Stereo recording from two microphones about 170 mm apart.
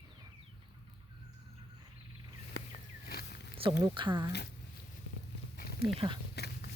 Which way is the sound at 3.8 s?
30° right (ahead or behind).